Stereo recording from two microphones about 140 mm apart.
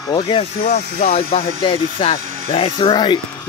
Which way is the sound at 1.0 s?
45° left (ahead or behind).